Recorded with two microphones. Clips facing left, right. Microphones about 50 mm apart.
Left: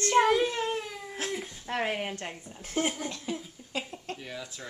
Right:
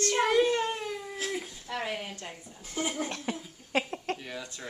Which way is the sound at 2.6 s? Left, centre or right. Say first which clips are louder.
Left 4 dB; left.